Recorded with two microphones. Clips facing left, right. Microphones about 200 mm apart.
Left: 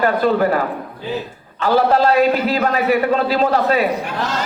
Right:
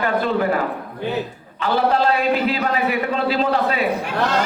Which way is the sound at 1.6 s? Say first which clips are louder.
Left 4 dB; 40° left (ahead or behind).